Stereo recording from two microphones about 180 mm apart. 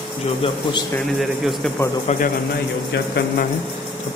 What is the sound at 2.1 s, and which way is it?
Speech, 40° left (ahead or behind).